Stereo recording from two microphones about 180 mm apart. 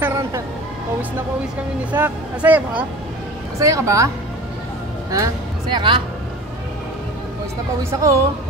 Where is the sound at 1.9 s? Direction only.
10° right (ahead or behind); by 6.0 s 25° right (ahead or behind).